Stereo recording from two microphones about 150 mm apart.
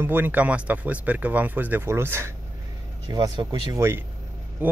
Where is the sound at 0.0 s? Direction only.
15° right (ahead or behind).